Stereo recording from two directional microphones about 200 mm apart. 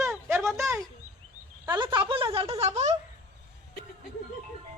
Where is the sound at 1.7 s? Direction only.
25° right (ahead or behind).